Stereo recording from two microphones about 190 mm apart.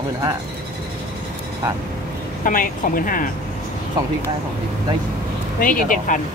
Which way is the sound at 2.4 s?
45° left (ahead or behind).